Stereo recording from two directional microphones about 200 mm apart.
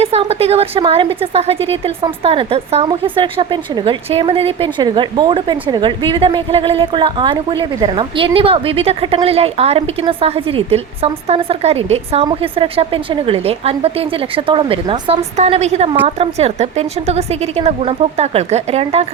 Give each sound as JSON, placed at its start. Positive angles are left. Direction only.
{"t": 0.0, "sound": "a woman's voice", "side_deg": -30}